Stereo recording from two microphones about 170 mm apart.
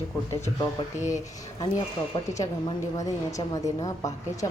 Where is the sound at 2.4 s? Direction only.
20° left (ahead or behind).